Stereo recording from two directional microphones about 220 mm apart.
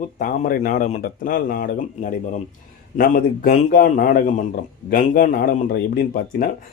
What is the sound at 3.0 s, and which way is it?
Speech, 40° left (ahead or behind).